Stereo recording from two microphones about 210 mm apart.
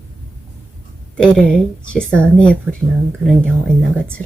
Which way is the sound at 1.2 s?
5° left (ahead or behind).